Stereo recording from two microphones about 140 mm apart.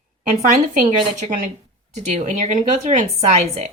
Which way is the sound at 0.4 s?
75° right (ahead or behind).